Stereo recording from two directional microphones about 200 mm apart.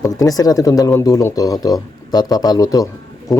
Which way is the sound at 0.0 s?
20° left (ahead or behind).